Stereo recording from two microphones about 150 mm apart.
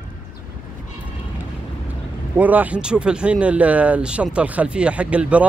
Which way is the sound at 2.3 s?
10° right (ahead or behind).